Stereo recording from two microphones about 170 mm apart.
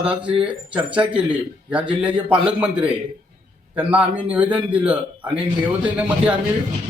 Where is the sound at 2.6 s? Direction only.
5° right (ahead or behind).